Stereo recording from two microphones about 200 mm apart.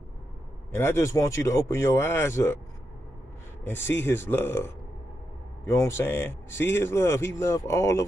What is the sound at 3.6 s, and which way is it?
Speech, 10° left (ahead or behind).